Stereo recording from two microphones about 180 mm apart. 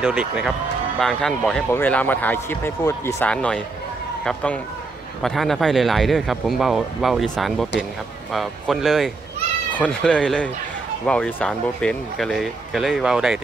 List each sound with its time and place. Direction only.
0.0 s speech: 5° right (ahead or behind)